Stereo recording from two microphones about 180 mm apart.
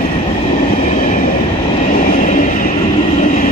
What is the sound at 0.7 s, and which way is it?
Train, 45° left (ahead or behind).